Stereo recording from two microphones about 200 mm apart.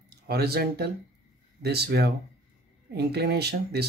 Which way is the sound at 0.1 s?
50° right (ahead or behind).